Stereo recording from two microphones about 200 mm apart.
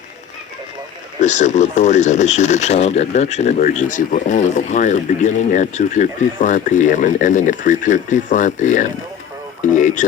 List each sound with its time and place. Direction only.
1.2 s speech: 35° left (ahead or behind)